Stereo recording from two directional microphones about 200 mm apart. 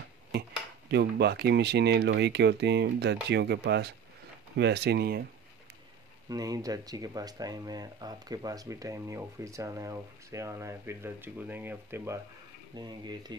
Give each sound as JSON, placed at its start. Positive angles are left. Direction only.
{"t": 0.8, "sound": "speech", "side_deg": -55}
{"t": 6.2, "sound": "speech", "side_deg": -20}